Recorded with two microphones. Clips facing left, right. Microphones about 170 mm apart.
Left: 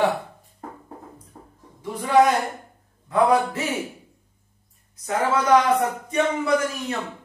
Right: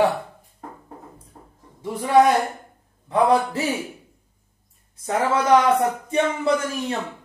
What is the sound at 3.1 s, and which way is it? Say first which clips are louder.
Speech: right 1 dB; 30° right (ahead or behind).